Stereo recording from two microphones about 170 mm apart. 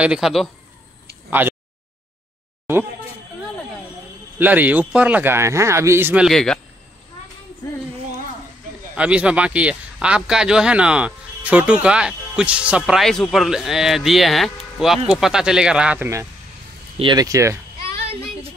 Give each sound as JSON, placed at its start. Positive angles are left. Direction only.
{"t": 0.0, "sound": "speech", "side_deg": -5}
{"t": 1.4, "sound": "a sound", "side_deg": -10}
{"t": 2.6, "sound": "speech", "side_deg": -15}
{"t": 4.4, "sound": "speech", "side_deg": -10}
{"t": 6.2, "sound": "speech", "side_deg": 5}
{"t": 8.9, "sound": "speech", "side_deg": -5}